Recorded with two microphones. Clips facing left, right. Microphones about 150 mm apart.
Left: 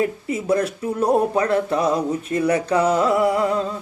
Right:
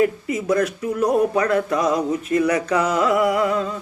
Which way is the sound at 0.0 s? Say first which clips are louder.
Right 3 dB; 30° left (ahead or behind).